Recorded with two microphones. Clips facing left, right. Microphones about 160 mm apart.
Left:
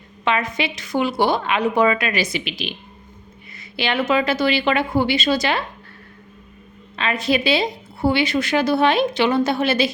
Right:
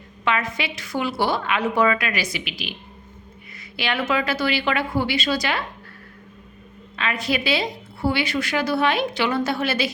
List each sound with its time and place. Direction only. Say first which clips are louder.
0.3 s a woman's voice: left 3 dB; 20° left (ahead or behind)
3.8 s a woman's voice: left 4 dB; 25° left (ahead or behind)
6.9 s a woman's voice: left 4 dB; 30° left (ahead or behind)